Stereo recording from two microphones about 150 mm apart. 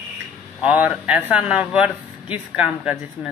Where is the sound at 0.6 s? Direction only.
10° right (ahead or behind).